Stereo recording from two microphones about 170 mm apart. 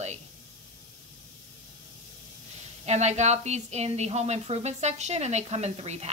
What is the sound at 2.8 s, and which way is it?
A woman's voice, 40° right (ahead or behind).